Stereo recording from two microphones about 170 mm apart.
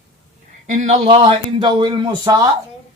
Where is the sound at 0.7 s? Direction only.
45° right (ahead or behind).